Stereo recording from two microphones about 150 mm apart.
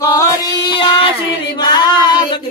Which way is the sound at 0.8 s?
35° left (ahead or behind).